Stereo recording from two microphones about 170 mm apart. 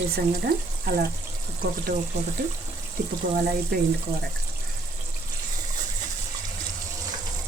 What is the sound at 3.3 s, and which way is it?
Speech, 60° right (ahead or behind).